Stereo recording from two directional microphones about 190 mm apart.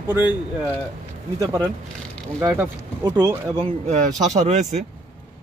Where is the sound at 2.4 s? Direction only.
20° right (ahead or behind).